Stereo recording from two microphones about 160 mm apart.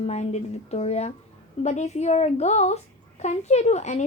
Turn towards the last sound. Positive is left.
turn(degrees=45)  # may be behind; listen again after turning